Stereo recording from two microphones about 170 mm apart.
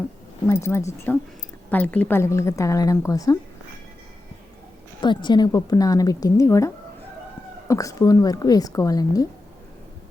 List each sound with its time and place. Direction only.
0.4 s a woman's voice: 15° left (ahead or behind)
4.9 s a woman's voice: 25° left (ahead or behind)
7.7 s a woman's voice: 20° left (ahead or behind)